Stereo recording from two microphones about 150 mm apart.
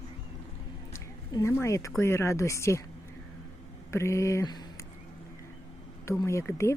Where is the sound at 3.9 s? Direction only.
20° left (ahead or behind).